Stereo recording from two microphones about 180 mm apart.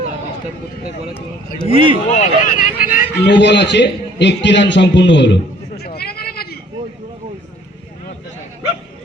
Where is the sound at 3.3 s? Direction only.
75° left (ahead or behind).